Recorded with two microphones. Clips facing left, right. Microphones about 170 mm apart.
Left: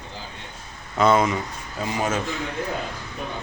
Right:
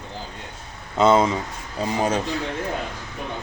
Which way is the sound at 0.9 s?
25° right (ahead or behind).